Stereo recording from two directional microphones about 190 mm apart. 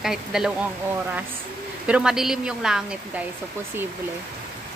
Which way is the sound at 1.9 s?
5° right (ahead or behind).